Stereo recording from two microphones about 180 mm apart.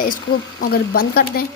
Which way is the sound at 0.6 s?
55° left (ahead or behind).